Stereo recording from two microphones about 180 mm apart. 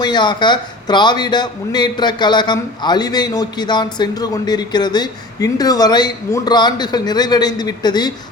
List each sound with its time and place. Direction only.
0.0 s a man's voice: 25° left (ahead or behind)